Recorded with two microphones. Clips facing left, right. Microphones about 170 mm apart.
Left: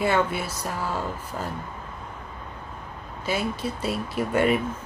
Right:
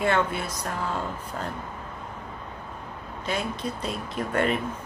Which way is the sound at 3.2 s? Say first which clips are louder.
Left 2 dB; 5° left (ahead or behind).